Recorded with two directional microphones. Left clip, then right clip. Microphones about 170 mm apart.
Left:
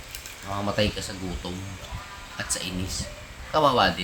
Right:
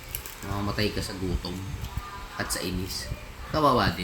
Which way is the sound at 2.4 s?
35° left (ahead or behind).